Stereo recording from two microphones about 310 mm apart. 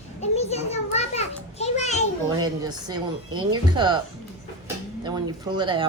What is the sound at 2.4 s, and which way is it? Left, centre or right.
Speech, centre.